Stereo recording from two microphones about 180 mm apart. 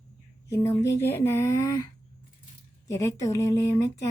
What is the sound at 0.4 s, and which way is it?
Speech, 15° left (ahead or behind).